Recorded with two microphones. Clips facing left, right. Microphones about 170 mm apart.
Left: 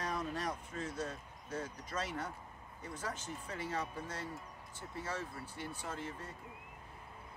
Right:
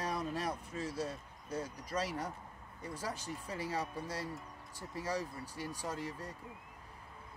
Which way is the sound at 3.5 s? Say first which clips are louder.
Right 1 dB; 35° right (ahead or behind).